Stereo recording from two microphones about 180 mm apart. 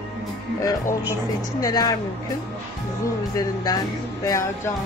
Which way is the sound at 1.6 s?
20° left (ahead or behind).